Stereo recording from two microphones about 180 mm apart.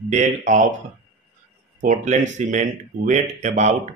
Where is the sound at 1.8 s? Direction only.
45° right (ahead or behind).